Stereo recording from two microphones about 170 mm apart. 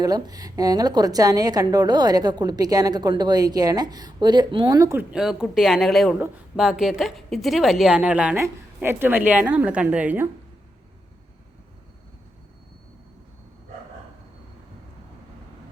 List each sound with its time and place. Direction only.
0.0 s a woman's voice: 20° right (ahead or behind)
5.1 s a woman's voice: 5° right (ahead or behind)